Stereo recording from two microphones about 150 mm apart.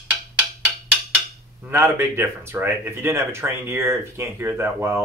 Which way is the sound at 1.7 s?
15° right (ahead or behind).